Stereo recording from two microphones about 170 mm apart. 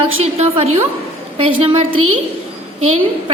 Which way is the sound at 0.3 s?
40° right (ahead or behind).